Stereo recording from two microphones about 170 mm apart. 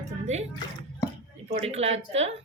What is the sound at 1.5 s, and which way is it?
Speech, 40° right (ahead or behind).